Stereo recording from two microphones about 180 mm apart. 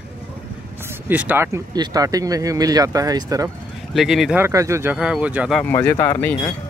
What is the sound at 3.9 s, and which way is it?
Speech, centre (ahead or behind).